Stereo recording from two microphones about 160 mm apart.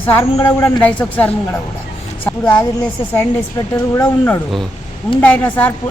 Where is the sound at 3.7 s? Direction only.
20° left (ahead or behind).